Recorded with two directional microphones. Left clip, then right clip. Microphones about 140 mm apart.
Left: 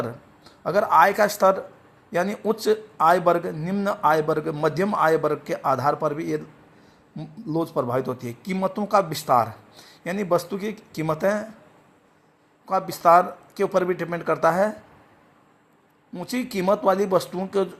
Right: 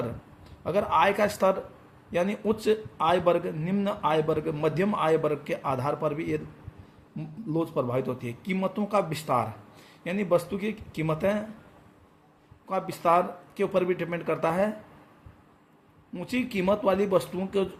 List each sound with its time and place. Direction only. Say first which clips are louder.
0.6 s a man's voice: left 6 dB; 35° left (ahead or behind)
12.6 s a man's voice: left 7 dB; 30° left (ahead or behind)
16.3 s a man's voice: left 4 dB; 30° left (ahead or behind)